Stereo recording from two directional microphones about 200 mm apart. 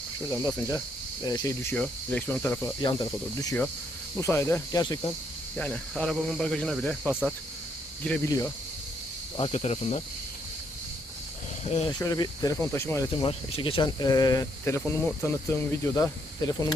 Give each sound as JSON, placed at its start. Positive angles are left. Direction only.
{"t": 0.3, "sound": "speech", "side_deg": 15}
{"t": 5.5, "sound": "speech", "side_deg": 5}
{"t": 8.0, "sound": "speech", "side_deg": 5}
{"t": 8.3, "sound": "speech", "side_deg": 15}
{"t": 9.4, "sound": "speech", "side_deg": 30}
{"t": 11.9, "sound": "speech", "side_deg": 20}